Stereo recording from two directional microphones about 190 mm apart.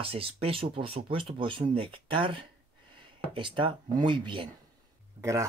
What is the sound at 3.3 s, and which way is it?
Speech, 25° right (ahead or behind).